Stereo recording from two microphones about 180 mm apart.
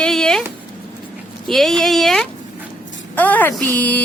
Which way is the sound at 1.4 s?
Centre (ahead or behind).